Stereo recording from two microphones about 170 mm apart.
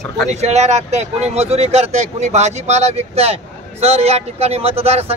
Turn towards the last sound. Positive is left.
turn(degrees=-35)  # may be behind; listen again after turning